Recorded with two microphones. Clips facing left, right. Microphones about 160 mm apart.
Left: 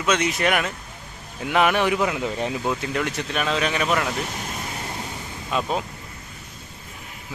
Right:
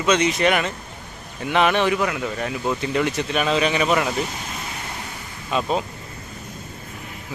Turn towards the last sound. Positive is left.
turn(degrees=0)  # may be behind; listen again after turning